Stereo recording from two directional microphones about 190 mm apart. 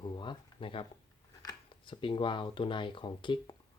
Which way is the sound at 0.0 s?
25° left (ahead or behind).